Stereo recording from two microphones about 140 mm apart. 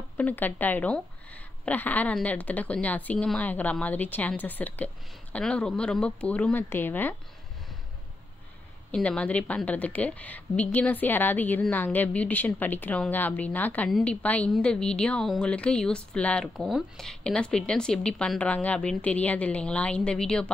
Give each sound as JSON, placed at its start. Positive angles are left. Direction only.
{"t": 0.2, "sound": "a woman's voice", "side_deg": 10}
{"t": 8.9, "sound": "a woman's voice", "side_deg": 10}